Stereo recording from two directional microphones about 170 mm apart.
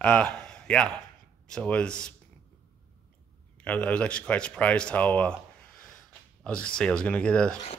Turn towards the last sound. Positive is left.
turn(degrees=5)  # may be behind; listen again after turning